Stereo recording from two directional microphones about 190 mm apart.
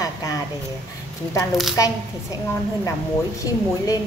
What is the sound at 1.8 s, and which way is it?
Speech, 15° left (ahead or behind).